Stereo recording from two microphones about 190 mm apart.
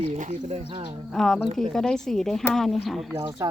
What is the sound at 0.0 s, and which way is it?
Speech, 40° right (ahead or behind).